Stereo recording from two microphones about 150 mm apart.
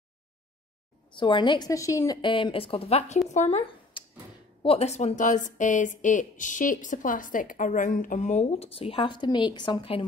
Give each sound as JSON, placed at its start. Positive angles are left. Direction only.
{"t": 1.1, "sound": "a woman's voice", "side_deg": 30}
{"t": 2.2, "sound": "speech", "side_deg": 35}
{"t": 4.6, "sound": "speech", "side_deg": 45}